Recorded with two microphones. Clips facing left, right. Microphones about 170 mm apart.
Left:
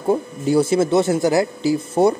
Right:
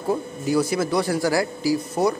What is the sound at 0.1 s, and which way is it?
Speech, 25° left (ahead or behind).